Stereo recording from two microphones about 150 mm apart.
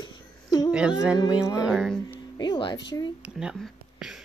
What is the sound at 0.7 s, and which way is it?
Speech, 5° right (ahead or behind).